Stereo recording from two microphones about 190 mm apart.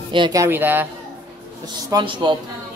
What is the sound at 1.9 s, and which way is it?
Speech, 25° right (ahead or behind).